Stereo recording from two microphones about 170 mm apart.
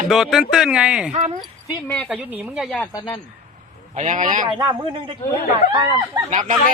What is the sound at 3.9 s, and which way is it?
Speech, 45° right (ahead or behind).